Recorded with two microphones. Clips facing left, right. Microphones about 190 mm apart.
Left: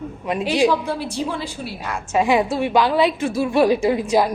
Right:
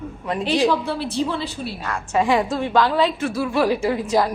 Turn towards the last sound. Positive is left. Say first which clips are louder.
# left 2 dB
turn(degrees=15)  # may be behind; listen again after turning